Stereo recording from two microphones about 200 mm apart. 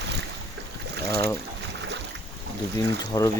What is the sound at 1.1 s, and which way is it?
Speech, 15° left (ahead or behind).